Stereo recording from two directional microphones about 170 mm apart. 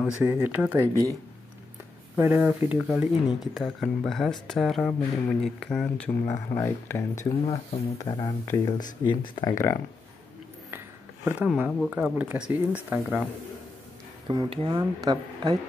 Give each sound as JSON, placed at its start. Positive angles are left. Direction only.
{"t": 0.0, "sound": "speech", "side_deg": -10}
{"t": 2.1, "sound": "speech", "side_deg": -10}
{"t": 6.2, "sound": "speech", "side_deg": 15}
{"t": 7.4, "sound": "speech", "side_deg": 35}
{"t": 8.2, "sound": "speech", "side_deg": 20}
{"t": 11.2, "sound": "speech", "side_deg": -5}
{"t": 14.2, "sound": "speech", "side_deg": -25}